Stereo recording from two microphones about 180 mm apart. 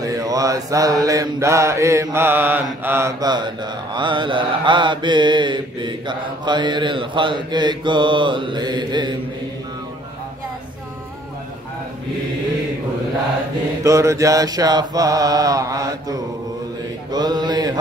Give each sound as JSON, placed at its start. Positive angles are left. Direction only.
{"t": 0.0, "sound": "mantra", "side_deg": -20}
{"t": 13.8, "sound": "mantra", "side_deg": -15}